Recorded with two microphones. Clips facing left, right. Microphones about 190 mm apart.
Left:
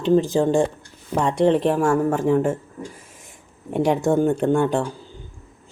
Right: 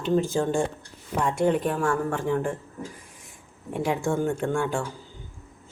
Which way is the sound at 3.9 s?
40° left (ahead or behind).